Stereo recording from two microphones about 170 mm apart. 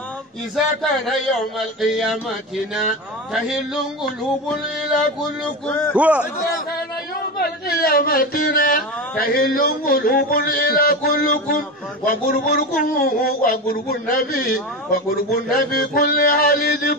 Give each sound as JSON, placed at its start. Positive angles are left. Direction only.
{"t": 0.8, "sound": "a man's voice", "side_deg": 0}
{"t": 5.7, "sound": "a man's voice", "side_deg": 10}
{"t": 5.9, "sound": "a man's voice", "side_deg": -10}
{"t": 7.3, "sound": "a man's voice", "side_deg": 65}